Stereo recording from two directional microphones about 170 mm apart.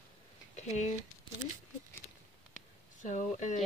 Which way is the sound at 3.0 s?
45° left (ahead or behind).